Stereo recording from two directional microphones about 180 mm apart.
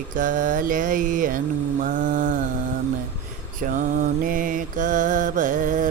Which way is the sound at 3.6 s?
45° right (ahead or behind).